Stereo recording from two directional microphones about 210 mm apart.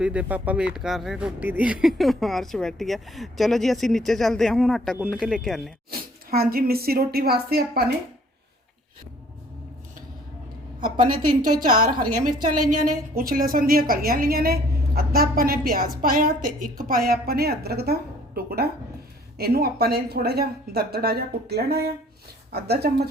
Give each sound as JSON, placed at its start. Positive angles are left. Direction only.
{"t": 0.0, "sound": "speech", "side_deg": -5}
{"t": 5.9, "sound": "a woman's voice", "side_deg": -45}
{"t": 10.8, "sound": "a woman's voice", "side_deg": -20}
{"t": 11.6, "sound": "a woman's voice", "side_deg": -40}